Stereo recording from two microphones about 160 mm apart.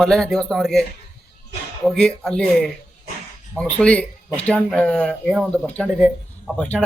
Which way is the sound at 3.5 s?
5° left (ahead or behind).